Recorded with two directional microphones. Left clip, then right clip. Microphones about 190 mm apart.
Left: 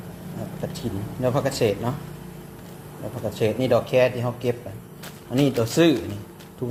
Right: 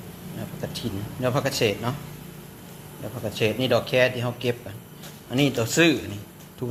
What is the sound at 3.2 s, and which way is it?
Speech, 10° left (ahead or behind).